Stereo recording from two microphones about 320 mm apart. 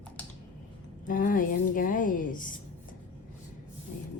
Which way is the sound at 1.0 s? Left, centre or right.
Left.